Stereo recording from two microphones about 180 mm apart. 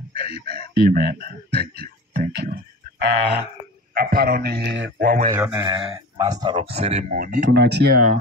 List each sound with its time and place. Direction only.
0.7 s a man's voice: 55° right (ahead or behind)
5.3 s speech: 15° right (ahead or behind)
6.5 s speech: 35° right (ahead or behind)
7.5 s a man's voice: 70° right (ahead or behind); by 8.2 s 50° right (ahead or behind)